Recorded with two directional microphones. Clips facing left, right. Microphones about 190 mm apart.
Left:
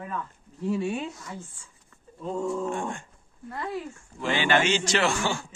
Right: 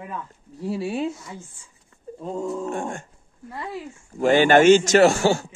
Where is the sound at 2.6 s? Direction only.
45° right (ahead or behind).